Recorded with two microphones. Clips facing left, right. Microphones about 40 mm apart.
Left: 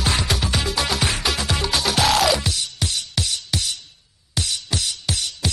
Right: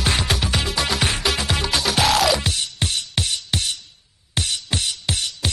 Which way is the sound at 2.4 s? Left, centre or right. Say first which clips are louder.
Right 1 dB; right.